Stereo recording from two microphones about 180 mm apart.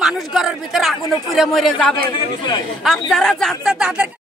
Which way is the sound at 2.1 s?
25° left (ahead or behind).